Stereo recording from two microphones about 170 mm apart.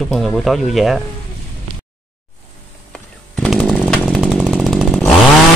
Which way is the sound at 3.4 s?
Centre (ahead or behind).